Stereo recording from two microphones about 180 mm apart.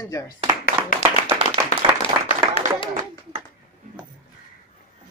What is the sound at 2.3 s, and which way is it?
Clapping, 30° left (ahead or behind).